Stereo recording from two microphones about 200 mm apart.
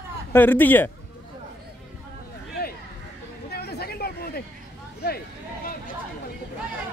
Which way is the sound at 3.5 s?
55° left (ahead or behind).